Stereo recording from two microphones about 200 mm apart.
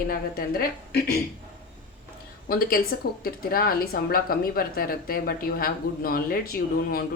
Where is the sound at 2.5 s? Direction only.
45° left (ahead or behind).